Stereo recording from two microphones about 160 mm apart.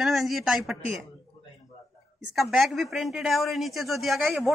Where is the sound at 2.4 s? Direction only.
Centre (ahead or behind).